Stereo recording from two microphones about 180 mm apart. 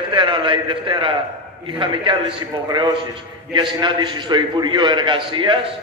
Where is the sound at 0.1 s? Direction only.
25° right (ahead or behind).